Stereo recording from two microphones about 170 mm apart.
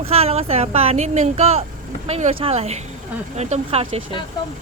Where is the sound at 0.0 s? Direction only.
35° right (ahead or behind).